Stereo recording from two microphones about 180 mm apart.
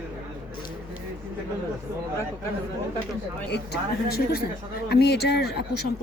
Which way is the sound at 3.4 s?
65° left (ahead or behind).